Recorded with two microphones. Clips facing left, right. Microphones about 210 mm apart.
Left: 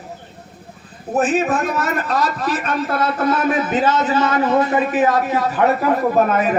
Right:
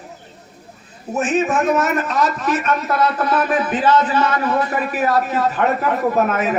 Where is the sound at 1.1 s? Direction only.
35° left (ahead or behind); by 5.5 s 15° left (ahead or behind).